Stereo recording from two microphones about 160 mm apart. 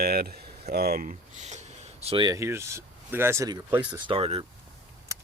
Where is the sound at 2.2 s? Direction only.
20° right (ahead or behind).